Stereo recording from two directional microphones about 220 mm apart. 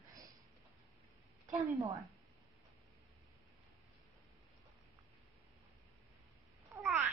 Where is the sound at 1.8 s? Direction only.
15° right (ahead or behind).